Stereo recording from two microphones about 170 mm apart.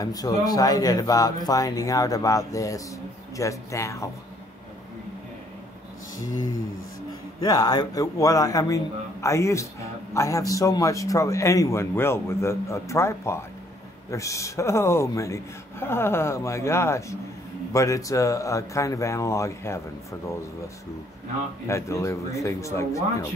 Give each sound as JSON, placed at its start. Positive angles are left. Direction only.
{"t": 0.0, "sound": "a man's voice", "side_deg": 20}
{"t": 7.4, "sound": "a man's voice", "side_deg": 20}
{"t": 21.6, "sound": "a man's voice", "side_deg": 15}